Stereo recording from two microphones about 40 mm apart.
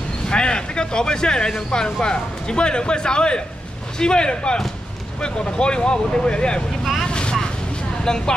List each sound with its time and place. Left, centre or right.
0.3 s a man's voice: left
7.1 s vehicle: left
8.0 s speech: centre